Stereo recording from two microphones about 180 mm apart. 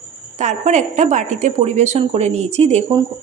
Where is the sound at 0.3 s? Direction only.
40° right (ahead or behind).